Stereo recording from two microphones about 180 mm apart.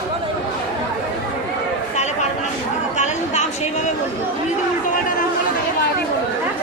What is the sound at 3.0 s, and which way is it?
Chatter, 40° left (ahead or behind).